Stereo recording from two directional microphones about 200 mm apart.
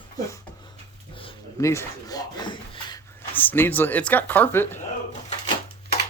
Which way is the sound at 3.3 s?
10° left (ahead or behind).